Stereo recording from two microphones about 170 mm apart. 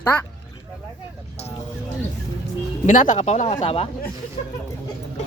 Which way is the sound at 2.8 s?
50° left (ahead or behind).